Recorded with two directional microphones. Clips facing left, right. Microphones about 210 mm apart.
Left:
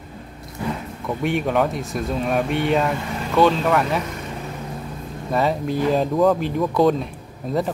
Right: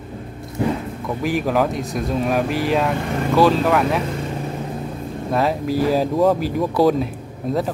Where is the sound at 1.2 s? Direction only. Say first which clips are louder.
Right 1 dB; centre (ahead or behind).